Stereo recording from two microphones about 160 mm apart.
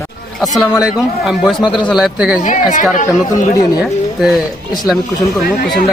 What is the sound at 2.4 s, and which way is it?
Speech, 50° left (ahead or behind).